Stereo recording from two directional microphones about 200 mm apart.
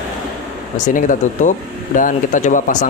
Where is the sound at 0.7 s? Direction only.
40° left (ahead or behind).